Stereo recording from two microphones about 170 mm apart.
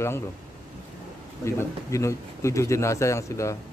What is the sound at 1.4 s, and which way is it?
A man's voice, 15° left (ahead or behind).